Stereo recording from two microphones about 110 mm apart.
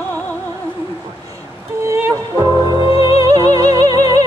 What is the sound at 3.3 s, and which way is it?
Music, 35° right (ahead or behind).